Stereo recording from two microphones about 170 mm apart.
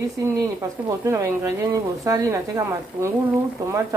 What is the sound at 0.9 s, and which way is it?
Speech, 20° right (ahead or behind).